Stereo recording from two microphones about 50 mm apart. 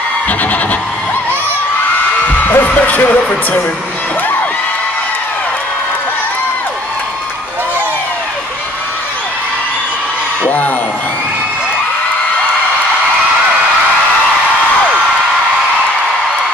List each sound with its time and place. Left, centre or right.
0.3 s music: left
2.4 s heart sounds: left
10.4 s a sound: left